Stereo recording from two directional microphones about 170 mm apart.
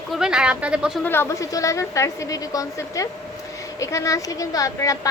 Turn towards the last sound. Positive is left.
turn(degrees=20)  # may be behind; listen again after turning